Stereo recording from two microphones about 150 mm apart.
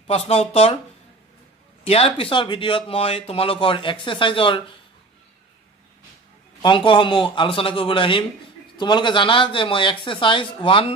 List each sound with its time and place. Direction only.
0.0 s speech: 40° left (ahead or behind)
1.9 s speech: 40° left (ahead or behind)
6.6 s speech: 35° left (ahead or behind)